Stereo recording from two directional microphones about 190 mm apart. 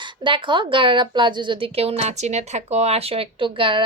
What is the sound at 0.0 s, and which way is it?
A woman's voice, 25° right (ahead or behind).